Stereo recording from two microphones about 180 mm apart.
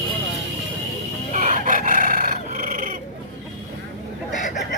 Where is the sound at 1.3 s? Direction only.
45° right (ahead or behind).